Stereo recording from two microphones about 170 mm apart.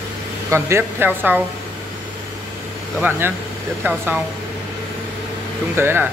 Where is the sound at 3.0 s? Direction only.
10° right (ahead or behind).